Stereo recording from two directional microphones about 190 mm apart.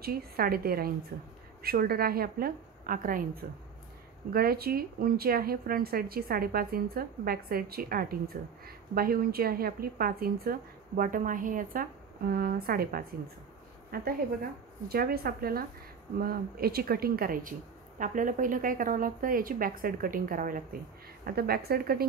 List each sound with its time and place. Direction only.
0.0 s speech: 50° right (ahead or behind)
4.3 s speech: 50° right (ahead or behind)